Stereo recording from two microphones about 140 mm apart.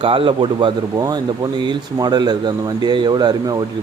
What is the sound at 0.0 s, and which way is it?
Speech, 40° right (ahead or behind).